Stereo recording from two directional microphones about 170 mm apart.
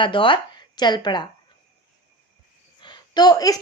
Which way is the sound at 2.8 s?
25° left (ahead or behind).